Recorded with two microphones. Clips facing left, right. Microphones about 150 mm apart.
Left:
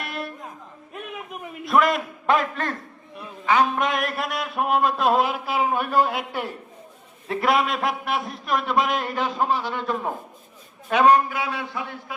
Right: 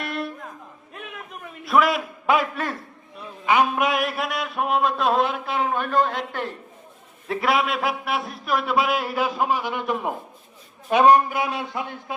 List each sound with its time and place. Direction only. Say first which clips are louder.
0.0 s music: right 3 dB; centre (ahead or behind)
1.6 s a man's voice: even; centre (ahead or behind)
3.4 s a man's voice: even; 15° right (ahead or behind)
3.8 s a man's voice: right 1 dB; centre (ahead or behind); by 12.1 s 20° right (ahead or behind)